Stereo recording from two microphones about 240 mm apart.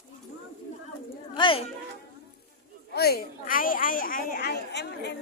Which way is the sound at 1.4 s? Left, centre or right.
Left.